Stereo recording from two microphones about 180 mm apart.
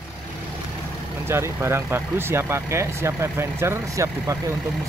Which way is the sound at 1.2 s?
15° right (ahead or behind).